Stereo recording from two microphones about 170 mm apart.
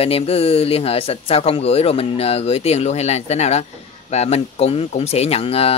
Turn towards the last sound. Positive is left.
turn(degrees=35)  # may be behind; listen again after turning